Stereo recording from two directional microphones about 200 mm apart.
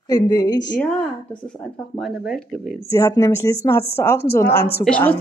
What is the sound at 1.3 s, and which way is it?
Speech, 5° left (ahead or behind).